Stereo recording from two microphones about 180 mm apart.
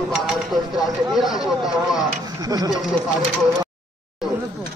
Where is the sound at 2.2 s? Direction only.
20° right (ahead or behind).